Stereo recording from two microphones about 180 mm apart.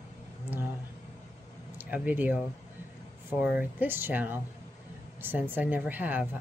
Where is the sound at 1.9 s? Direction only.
10° right (ahead or behind).